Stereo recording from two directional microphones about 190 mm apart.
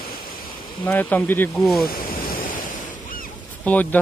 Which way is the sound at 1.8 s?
50° left (ahead or behind).